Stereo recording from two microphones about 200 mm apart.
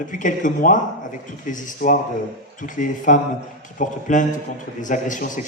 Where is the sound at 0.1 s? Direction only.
40° left (ahead or behind).